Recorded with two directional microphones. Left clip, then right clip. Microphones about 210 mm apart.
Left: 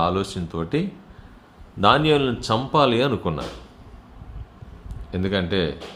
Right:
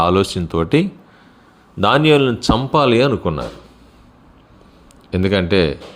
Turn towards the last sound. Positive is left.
turn(degrees=-35)  # may be behind; listen again after turning